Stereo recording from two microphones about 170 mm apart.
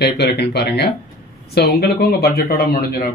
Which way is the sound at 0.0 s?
75° left (ahead or behind).